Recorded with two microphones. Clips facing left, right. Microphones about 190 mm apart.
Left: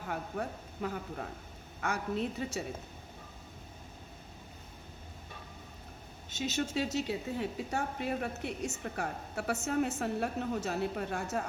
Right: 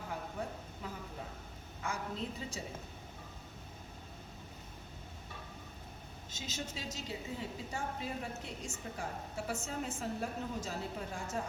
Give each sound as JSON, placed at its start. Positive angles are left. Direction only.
{"t": 0.1, "sound": "a woman's voice", "side_deg": 65}
{"t": 6.3, "sound": "a woman's voice", "side_deg": 65}